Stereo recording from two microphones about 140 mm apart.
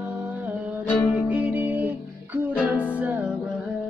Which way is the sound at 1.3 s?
10° right (ahead or behind).